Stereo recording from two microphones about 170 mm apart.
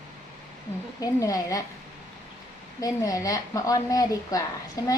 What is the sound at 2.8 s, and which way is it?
A woman's voice, 20° left (ahead or behind).